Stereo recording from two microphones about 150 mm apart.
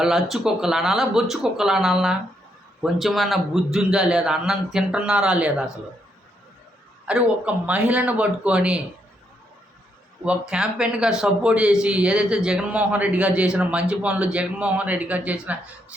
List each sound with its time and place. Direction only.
0.0 s a man's voice: centre (ahead or behind)
7.0 s a man's voice: 5° right (ahead or behind)
10.2 s a man's voice: 5° right (ahead or behind)